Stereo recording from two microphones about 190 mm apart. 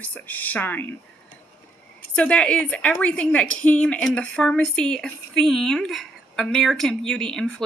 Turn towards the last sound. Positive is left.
turn(degrees=5)  # may be behind; listen again after turning